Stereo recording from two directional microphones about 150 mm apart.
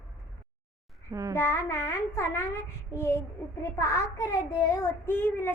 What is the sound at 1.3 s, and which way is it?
A child's voice, 15° left (ahead or behind).